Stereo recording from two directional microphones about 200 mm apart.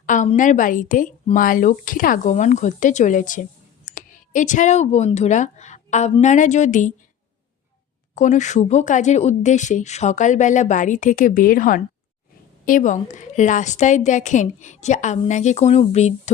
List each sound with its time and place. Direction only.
0.0 s speech: 40° left (ahead or behind)
8.1 s speech: 40° left (ahead or behind)